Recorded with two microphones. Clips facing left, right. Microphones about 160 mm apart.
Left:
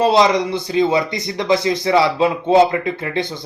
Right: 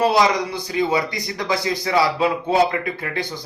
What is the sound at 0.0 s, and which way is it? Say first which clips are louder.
A man's voice: left 3 dB; 25° left (ahead or behind).